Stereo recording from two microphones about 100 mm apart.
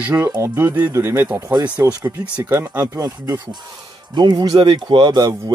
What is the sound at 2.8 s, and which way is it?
Speech, 35° right (ahead or behind).